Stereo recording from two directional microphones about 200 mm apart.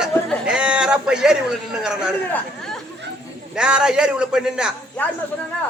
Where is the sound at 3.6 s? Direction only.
5° right (ahead or behind).